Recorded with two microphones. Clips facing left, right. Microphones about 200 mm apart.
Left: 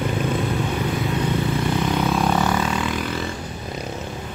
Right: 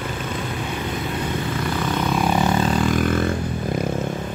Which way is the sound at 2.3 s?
20° right (ahead or behind).